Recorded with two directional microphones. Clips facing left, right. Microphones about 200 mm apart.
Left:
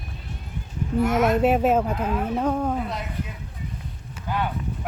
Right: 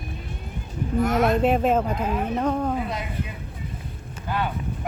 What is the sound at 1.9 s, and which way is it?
Speech, 10° right (ahead or behind).